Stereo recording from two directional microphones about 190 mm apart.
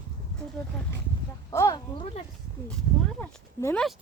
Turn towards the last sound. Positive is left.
turn(degrees=10)  # may be behind; listen again after turning